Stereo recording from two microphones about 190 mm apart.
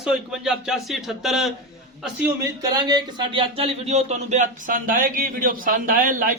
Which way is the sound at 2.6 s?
20° right (ahead or behind).